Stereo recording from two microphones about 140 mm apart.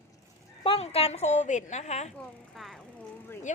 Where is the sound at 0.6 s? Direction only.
45° left (ahead or behind).